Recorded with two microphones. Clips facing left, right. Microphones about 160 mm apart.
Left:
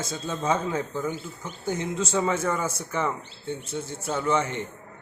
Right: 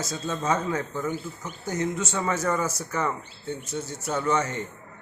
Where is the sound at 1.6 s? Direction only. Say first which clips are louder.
Even; 30° left (ahead or behind).